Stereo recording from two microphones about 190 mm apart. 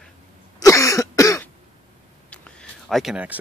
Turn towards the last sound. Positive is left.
turn(degrees=-5)  # may be behind; listen again after turning